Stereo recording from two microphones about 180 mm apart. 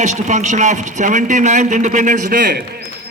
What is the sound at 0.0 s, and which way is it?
A man's voice, 40° right (ahead or behind).